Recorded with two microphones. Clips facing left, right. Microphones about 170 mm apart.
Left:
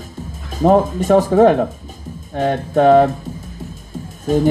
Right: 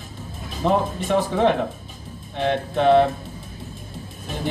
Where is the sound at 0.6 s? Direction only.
45° left (ahead or behind).